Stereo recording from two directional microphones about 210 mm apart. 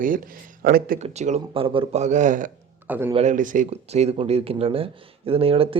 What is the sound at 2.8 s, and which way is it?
Speech, 10° right (ahead or behind).